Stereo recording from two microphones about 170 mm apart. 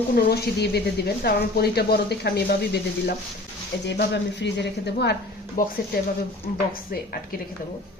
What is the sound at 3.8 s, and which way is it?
A woman's voice, 90° left.